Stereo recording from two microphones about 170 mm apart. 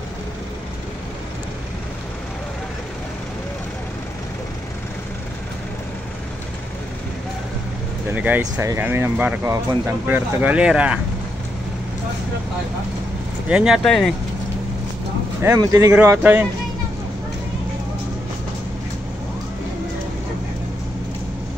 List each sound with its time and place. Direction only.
8.1 s speech: 10° right (ahead or behind)
10.0 s speech: 10° right (ahead or behind)
13.5 s speech: 5° right (ahead or behind)
15.4 s speech: 20° right (ahead or behind)